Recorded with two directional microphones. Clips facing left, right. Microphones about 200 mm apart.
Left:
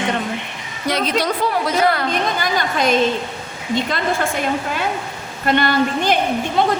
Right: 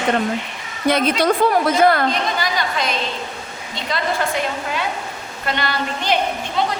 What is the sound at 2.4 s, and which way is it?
A woman's voice, 50° left (ahead or behind).